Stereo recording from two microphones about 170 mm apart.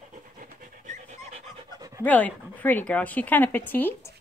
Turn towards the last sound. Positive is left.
turn(degrees=10)  # may be behind; listen again after turning